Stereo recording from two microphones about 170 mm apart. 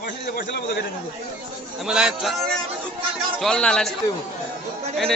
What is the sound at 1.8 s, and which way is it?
A man's voice, 5° right (ahead or behind).